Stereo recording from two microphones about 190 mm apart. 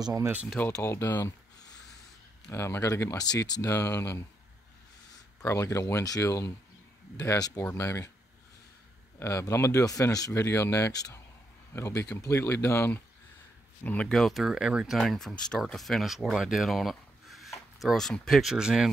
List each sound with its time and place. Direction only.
0.0 s speech: 15° right (ahead or behind)
0.6 s speech: 10° left (ahead or behind)
5.4 s speech: 15° left (ahead or behind)
9.2 s speech: 15° left (ahead or behind); by 18.9 s 5° right (ahead or behind)